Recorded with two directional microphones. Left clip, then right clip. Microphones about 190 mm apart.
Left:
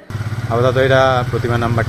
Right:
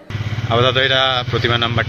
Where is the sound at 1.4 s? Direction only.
10° left (ahead or behind).